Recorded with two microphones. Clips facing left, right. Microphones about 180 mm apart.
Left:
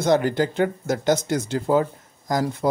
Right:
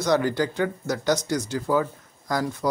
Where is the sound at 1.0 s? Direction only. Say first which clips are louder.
Left 2 dB; 55° left (ahead or behind).